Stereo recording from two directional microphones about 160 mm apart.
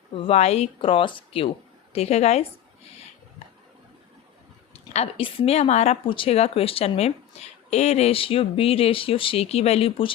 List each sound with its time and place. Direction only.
0.3 s a woman's voice: 40° left (ahead or behind)
4.9 s speech: 35° left (ahead or behind)